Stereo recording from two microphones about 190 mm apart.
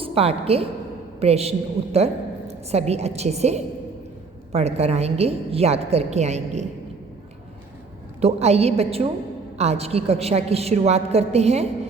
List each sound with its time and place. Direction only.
0.0 s a woman's voice: 30° right (ahead or behind)
8.2 s a woman's voice: 35° right (ahead or behind)